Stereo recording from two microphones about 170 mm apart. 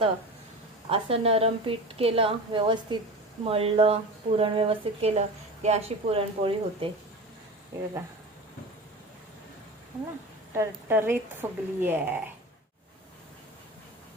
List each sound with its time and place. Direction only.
0.9 s a woman's voice: 35° right (ahead or behind)
7.7 s a woman's voice: 15° right (ahead or behind)
10.5 s a woman's voice: 15° right (ahead or behind)